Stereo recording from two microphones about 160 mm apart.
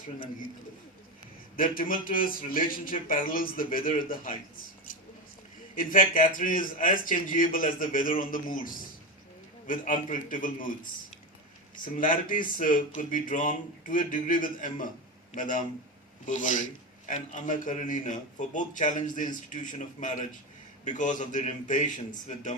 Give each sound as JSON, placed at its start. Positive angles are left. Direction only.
{"t": 1.5, "sound": "a man's voice", "side_deg": 60}
{"t": 5.7, "sound": "a man's voice", "side_deg": 55}
{"t": 11.9, "sound": "a man's voice", "side_deg": 55}